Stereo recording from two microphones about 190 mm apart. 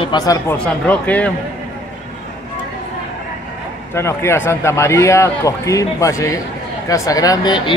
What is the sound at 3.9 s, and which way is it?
Speech, 15° left (ahead or behind).